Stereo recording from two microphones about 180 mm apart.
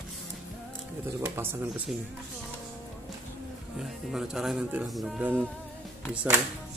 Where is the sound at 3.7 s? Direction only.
5° right (ahead or behind).